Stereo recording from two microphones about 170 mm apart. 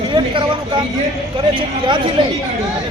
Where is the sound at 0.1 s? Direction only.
30° right (ahead or behind).